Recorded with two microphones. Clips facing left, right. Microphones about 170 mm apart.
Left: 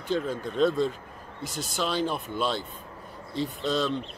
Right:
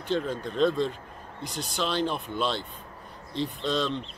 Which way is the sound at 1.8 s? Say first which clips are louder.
Even; 5° left (ahead or behind).